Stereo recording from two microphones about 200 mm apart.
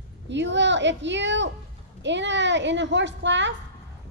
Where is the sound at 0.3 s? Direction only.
60° right (ahead or behind).